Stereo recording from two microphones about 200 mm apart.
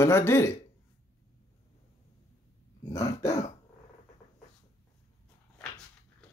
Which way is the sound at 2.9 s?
15° left (ahead or behind).